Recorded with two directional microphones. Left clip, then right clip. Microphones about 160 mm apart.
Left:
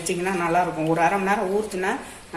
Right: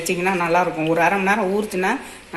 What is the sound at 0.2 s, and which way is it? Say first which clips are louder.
A man's voice: right 3 dB; 35° right (ahead or behind).